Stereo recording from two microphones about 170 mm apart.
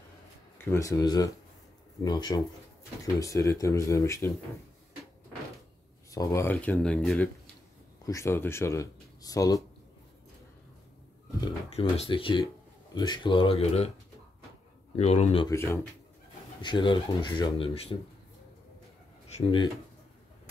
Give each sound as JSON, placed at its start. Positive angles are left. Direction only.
{"t": 0.7, "sound": "speech", "side_deg": 20}
{"t": 6.0, "sound": "speech", "side_deg": 20}
{"t": 8.0, "sound": "speech", "side_deg": 20}
{"t": 11.7, "sound": "speech", "side_deg": 35}
{"t": 15.0, "sound": "speech", "side_deg": 40}
{"t": 15.5, "sound": "speech", "side_deg": 15}
{"t": 16.6, "sound": "speech", "side_deg": 30}
{"t": 19.3, "sound": "speech", "side_deg": 30}